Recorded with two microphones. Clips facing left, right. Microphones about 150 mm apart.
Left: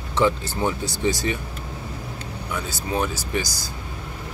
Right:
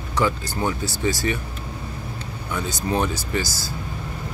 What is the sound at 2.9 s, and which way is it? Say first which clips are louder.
Speech: right 2 dB; 10° left (ahead or behind).